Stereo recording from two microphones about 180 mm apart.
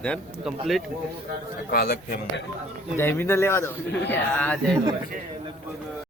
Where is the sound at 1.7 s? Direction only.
60° left (ahead or behind).